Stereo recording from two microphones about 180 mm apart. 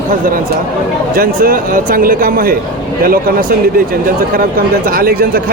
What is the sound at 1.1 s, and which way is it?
A man's voice, 55° right (ahead or behind).